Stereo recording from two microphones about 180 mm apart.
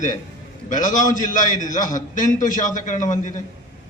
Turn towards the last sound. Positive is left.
turn(degrees=45)  # may be behind; listen again after turning